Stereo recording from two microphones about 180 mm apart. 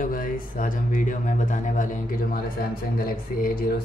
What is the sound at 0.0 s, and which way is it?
A man's voice, 50° left (ahead or behind).